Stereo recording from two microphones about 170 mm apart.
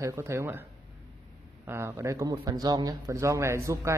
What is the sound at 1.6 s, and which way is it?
Speech, 15° right (ahead or behind).